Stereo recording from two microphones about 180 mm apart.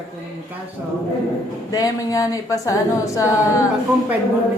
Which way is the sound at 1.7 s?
20° left (ahead or behind).